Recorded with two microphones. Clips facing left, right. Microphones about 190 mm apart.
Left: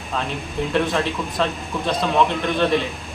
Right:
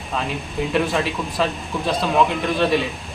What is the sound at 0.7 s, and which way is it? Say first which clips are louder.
A man's voice: even; centre (ahead or behind).